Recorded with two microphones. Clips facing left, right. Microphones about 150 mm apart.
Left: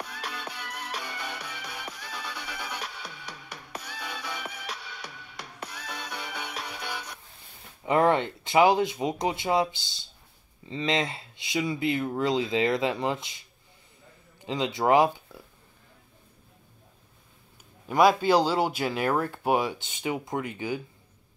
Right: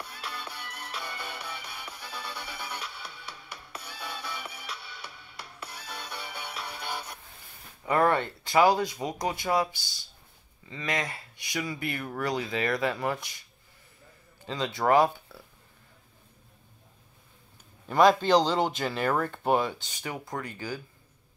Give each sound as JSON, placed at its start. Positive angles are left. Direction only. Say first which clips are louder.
{"t": 0.2, "sound": "music", "louder": "left 2 dB", "side_deg": 55}
{"t": 3.7, "sound": "music", "louder": "left 2 dB", "side_deg": 55}
{"t": 7.8, "sound": "speech", "louder": "left 2 dB", "side_deg": 20}
{"t": 14.4, "sound": "speech", "louder": "left 2 dB", "side_deg": 20}
{"t": 17.8, "sound": "speech", "louder": "even", "side_deg": 10}